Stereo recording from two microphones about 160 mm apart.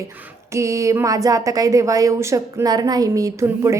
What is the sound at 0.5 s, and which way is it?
A woman's voice, 20° right (ahead or behind).